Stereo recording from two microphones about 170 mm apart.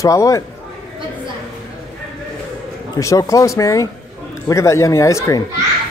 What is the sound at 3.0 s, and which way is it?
Speech, 20° left (ahead or behind).